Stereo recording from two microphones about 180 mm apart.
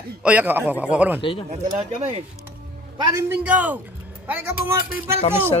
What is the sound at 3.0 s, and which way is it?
A man's voice, 15° right (ahead or behind).